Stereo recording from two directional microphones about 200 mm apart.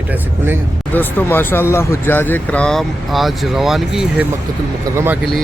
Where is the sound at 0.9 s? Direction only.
10° left (ahead or behind).